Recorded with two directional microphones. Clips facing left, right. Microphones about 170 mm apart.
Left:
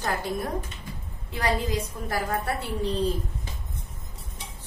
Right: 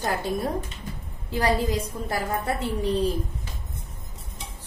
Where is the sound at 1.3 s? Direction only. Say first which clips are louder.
Right 3 dB; 30° right (ahead or behind).